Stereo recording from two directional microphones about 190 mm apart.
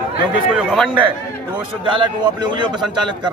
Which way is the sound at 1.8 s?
25° right (ahead or behind).